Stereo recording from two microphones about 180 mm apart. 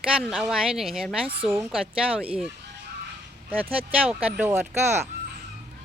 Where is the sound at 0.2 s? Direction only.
Centre (ahead or behind).